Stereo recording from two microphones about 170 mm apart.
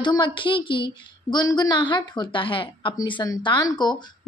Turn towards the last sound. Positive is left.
turn(degrees=25)  # may be behind; listen again after turning